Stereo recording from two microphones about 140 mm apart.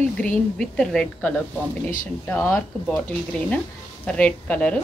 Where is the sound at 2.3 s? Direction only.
20° left (ahead or behind).